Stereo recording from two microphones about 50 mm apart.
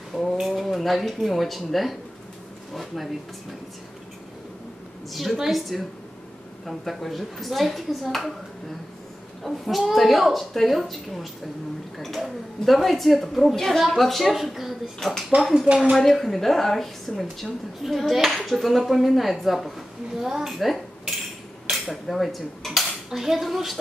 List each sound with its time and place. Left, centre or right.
0.4 s a woman's voice: centre
5.1 s a woman's voice: centre
9.4 s a woman's voice: centre
12.6 s a woman's voice: centre
16.0 s a woman's voice: centre
21.6 s cutlery: centre
22.8 s speech: centre